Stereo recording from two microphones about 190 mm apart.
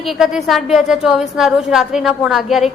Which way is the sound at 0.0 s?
Centre (ahead or behind).